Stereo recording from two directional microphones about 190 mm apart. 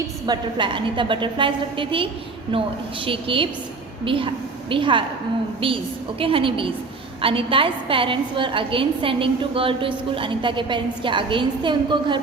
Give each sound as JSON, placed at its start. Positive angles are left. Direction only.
{"t": 0.3, "sound": "a woman's voice", "side_deg": -25}